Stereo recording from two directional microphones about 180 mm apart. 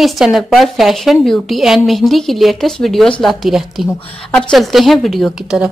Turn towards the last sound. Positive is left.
turn(degrees=-5)  # may be behind; listen again after turning